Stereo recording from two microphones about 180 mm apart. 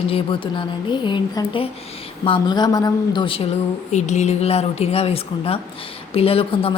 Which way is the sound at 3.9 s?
40° left (ahead or behind).